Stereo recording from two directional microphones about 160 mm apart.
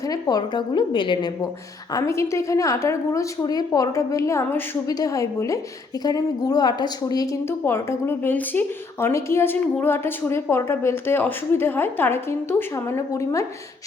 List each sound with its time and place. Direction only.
0.1 s a woman's voice: 25° left (ahead or behind)
7.6 s a woman's voice: 15° left (ahead or behind)